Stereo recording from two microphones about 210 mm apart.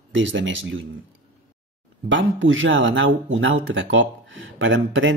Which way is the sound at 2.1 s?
65° right (ahead or behind).